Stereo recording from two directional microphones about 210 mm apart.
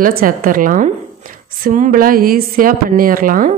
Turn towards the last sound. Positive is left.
turn(degrees=-40)  # may be behind; listen again after turning